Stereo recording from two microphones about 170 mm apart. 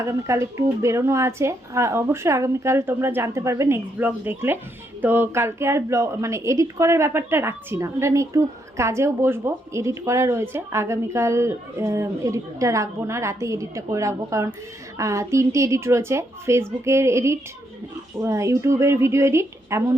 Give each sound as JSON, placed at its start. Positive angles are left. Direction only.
{"t": 0.0, "sound": "a woman's voice", "side_deg": -15}